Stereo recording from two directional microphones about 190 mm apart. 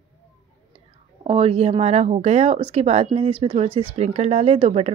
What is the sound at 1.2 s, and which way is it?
Speech, 30° right (ahead or behind).